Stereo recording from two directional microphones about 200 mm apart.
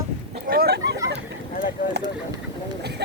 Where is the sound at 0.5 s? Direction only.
50° right (ahead or behind).